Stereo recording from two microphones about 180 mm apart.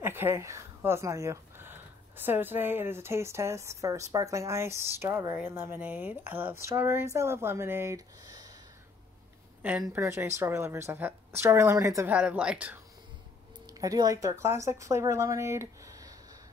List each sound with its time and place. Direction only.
0.0 s speech: 10° right (ahead or behind)
9.6 s speech: 5° right (ahead or behind)
13.7 s speech: 20° right (ahead or behind)